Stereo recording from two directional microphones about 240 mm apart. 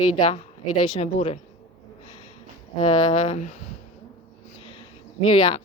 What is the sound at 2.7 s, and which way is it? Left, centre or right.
Speech, left.